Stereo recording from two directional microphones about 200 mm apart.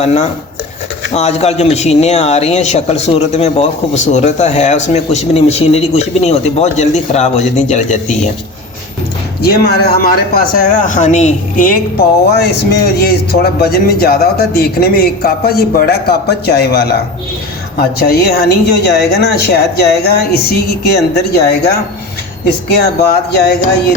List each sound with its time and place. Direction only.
0.0 s a man's voice: 35° left (ahead or behind)
9.4 s speech: 55° left (ahead or behind)
10.8 s a man's voice: 40° left (ahead or behind)
22.8 s speech: 55° left (ahead or behind)